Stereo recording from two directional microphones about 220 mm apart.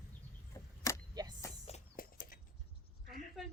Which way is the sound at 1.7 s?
35° left (ahead or behind).